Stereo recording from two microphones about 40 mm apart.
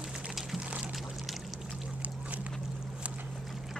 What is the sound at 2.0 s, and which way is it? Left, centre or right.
Boat, right.